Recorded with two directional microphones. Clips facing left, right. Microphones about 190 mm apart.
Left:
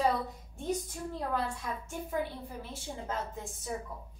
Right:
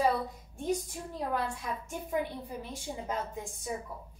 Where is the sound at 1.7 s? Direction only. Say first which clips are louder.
Right 2 dB; 15° right (ahead or behind).